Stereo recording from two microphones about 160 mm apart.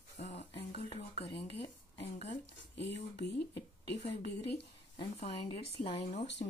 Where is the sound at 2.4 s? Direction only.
90° left.